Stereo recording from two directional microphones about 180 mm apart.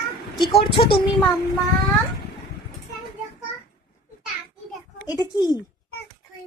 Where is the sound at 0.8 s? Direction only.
30° left (ahead or behind).